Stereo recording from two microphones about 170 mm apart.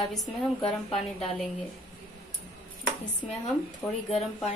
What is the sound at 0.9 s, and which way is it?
Speech, 35° left (ahead or behind).